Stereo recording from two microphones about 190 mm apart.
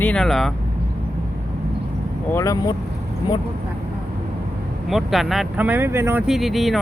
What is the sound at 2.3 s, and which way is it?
Speech, 20° left (ahead or behind).